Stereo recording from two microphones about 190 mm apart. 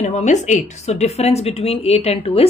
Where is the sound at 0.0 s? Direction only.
35° left (ahead or behind).